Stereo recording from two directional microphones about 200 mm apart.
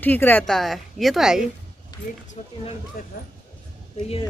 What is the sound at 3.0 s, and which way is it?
Speech, 45° left (ahead or behind).